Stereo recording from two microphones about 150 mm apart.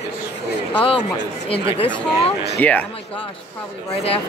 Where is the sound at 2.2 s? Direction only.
45° left (ahead or behind).